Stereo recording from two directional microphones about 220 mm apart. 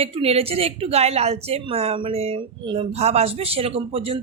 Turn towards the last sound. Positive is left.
turn(degrees=-25)  # may be behind; listen again after turning